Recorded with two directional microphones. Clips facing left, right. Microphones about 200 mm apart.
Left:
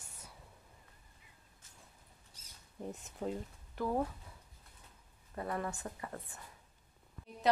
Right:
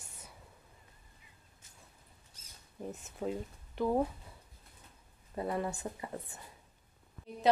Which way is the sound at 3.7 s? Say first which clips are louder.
Right 4 dB; 20° right (ahead or behind).